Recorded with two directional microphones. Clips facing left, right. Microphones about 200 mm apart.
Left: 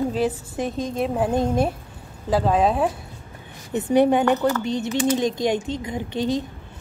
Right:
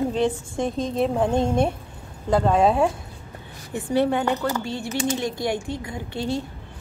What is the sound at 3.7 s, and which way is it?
A woman's voice, 20° left (ahead or behind).